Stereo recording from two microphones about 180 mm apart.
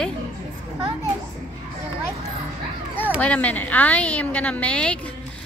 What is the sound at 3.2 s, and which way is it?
A woman's voice, 10° left (ahead or behind).